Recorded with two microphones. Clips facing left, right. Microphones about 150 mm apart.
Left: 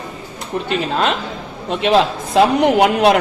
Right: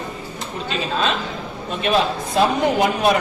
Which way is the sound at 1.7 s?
85° left.